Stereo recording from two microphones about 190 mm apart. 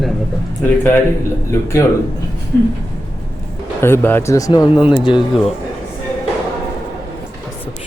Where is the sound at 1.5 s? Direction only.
15° left (ahead or behind).